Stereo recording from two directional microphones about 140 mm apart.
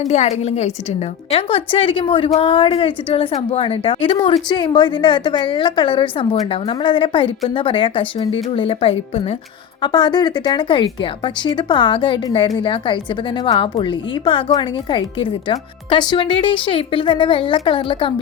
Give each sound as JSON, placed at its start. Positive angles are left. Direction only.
{"t": 0.0, "sound": "speech", "side_deg": 55}
{"t": 9.8, "sound": "speech", "side_deg": 30}